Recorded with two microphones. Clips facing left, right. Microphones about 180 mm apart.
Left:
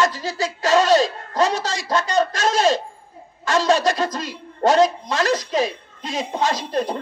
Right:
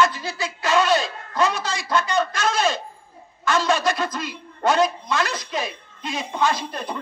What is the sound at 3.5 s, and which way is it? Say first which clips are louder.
A man's voice: left 3 dB; 40° left (ahead or behind).